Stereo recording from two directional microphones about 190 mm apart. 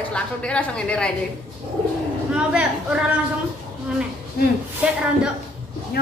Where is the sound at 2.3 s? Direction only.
5° right (ahead or behind).